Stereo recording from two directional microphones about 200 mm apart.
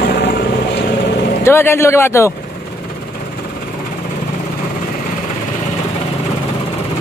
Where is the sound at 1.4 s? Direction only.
10° left (ahead or behind).